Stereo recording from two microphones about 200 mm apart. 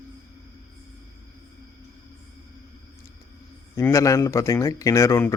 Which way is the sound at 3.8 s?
15° left (ahead or behind).